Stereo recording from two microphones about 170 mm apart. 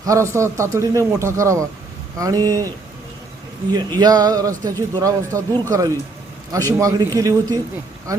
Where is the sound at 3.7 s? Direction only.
25° right (ahead or behind).